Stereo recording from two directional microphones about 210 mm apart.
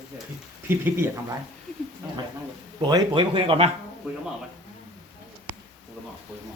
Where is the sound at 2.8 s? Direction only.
20° right (ahead or behind).